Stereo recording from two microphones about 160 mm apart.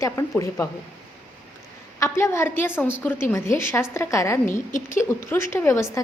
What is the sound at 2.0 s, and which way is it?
A woman's voice, 15° left (ahead or behind).